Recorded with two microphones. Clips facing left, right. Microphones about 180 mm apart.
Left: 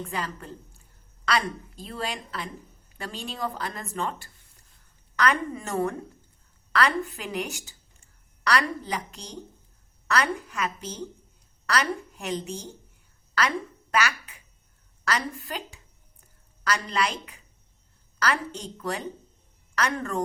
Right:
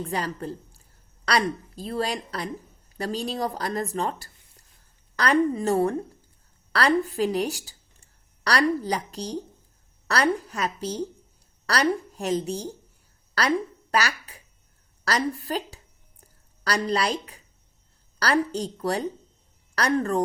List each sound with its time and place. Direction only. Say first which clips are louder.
0.0 s a woman's voice: right 4 dB; 35° right (ahead or behind)
13.9 s a sound: right 1 dB; 35° right (ahead or behind)
15.0 s a woman's voice: right 4 dB; 35° right (ahead or behind)